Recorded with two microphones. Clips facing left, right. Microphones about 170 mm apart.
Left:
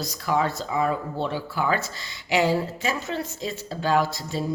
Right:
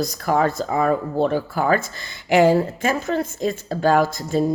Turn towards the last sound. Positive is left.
turn(degrees=-50)  # may be behind; listen again after turning